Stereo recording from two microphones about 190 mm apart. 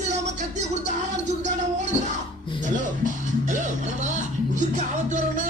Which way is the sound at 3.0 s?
40° right (ahead or behind).